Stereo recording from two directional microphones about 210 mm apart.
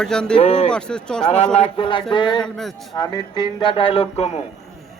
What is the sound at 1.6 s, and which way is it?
Speech, 25° left (ahead or behind).